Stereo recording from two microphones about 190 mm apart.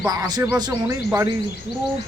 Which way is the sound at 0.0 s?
20° right (ahead or behind).